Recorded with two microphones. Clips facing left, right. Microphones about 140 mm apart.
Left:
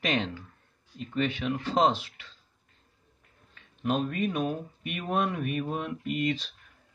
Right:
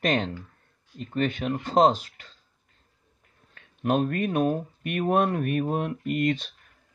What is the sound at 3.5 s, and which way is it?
Speech, 50° right (ahead or behind).